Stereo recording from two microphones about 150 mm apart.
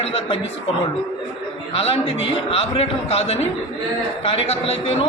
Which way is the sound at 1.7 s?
40° left (ahead or behind).